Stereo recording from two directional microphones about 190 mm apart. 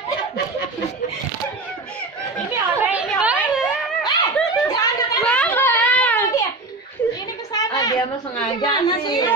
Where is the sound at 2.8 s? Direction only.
10° right (ahead or behind).